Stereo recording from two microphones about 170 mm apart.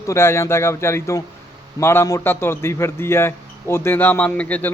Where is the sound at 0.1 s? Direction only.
15° left (ahead or behind).